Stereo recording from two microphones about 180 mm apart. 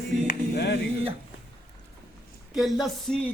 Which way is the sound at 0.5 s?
70° left (ahead or behind).